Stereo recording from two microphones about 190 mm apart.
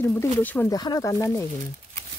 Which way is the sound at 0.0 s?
10° left (ahead or behind).